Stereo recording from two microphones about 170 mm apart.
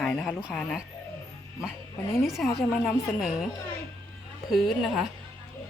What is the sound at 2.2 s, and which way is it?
Speech, centre (ahead or behind).